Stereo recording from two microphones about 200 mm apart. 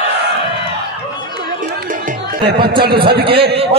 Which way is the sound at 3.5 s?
30° right (ahead or behind).